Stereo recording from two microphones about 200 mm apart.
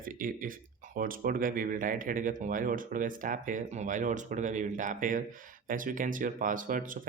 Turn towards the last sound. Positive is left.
turn(degrees=-40)  # may be behind; listen again after turning